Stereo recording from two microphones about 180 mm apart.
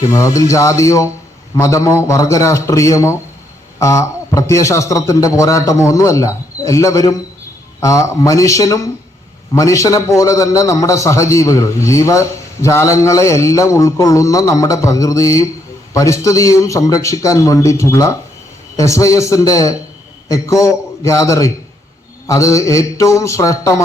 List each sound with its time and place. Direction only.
0.0 s a man's voice: 20° left (ahead or behind)